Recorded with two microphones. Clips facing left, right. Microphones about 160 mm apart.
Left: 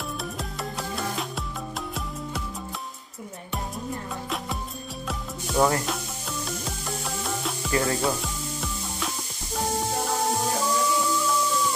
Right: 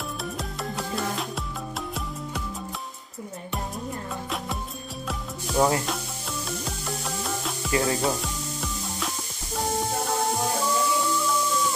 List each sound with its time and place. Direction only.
0.2 s music: centre (ahead or behind)
5.6 s speech: 5° right (ahead or behind)
6.6 s music: centre (ahead or behind)
7.7 s music: 20° right (ahead or behind)
8.0 s music: centre (ahead or behind)